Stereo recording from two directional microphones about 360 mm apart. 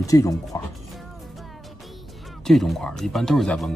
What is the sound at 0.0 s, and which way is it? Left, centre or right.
Speech, centre.